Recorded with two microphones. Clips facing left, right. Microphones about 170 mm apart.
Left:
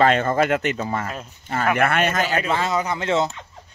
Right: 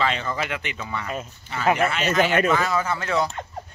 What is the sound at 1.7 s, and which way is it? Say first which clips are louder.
Speech: left 1 dB; 55° left (ahead or behind).